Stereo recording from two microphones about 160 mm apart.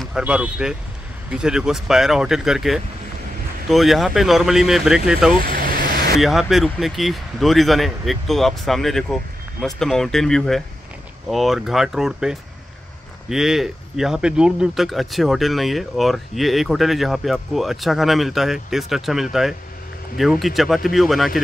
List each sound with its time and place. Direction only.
0.0 s speech: 5° right (ahead or behind)
5.3 s vehicle: 65° right (ahead or behind)
6.1 s speech: centre (ahead or behind)